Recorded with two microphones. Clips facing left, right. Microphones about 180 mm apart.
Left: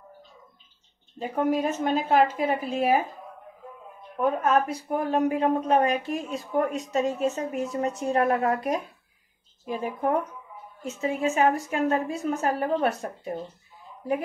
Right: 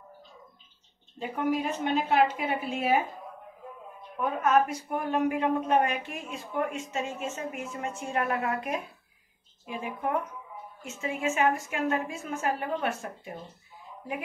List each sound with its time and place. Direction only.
1.2 s a woman's voice: 40° left (ahead or behind)
4.4 s a woman's voice: 35° left (ahead or behind)